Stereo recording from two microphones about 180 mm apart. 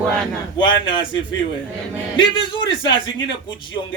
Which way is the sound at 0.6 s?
25° left (ahead or behind).